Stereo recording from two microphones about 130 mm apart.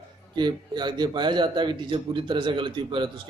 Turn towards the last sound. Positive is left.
turn(degrees=-40)  # may be behind; listen again after turning